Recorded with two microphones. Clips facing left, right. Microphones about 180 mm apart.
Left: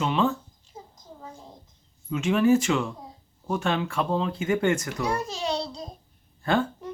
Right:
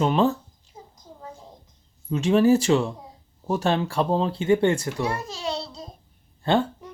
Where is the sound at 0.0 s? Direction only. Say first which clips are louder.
Right 4 dB; 40° right (ahead or behind).